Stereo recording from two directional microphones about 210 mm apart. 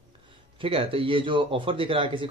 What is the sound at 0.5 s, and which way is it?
Speech, 25° right (ahead or behind).